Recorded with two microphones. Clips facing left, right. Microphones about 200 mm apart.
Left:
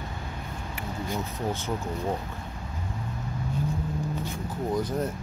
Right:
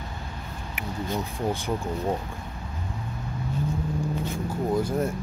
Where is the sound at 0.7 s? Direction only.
15° right (ahead or behind).